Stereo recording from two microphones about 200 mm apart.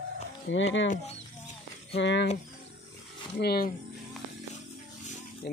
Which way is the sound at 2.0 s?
65° left (ahead or behind).